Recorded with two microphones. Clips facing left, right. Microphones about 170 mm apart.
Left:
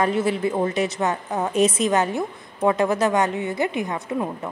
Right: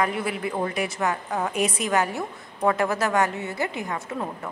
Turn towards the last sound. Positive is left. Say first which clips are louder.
# left 5 dB
turn(degrees=15)  # may be behind; listen again after turning